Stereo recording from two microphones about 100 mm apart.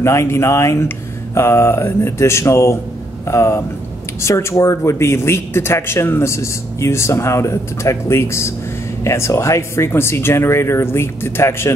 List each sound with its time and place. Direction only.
0.0 s speech: 30° left (ahead or behind)